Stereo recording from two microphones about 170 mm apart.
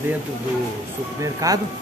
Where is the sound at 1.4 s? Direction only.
20° right (ahead or behind).